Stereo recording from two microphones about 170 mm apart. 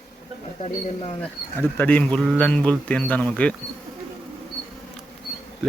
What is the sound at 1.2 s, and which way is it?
Speech, 10° left (ahead or behind).